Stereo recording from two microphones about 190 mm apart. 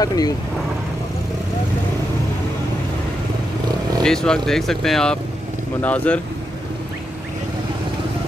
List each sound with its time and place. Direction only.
0.0 s speech: 20° left (ahead or behind)
4.0 s speech: 5° left (ahead or behind)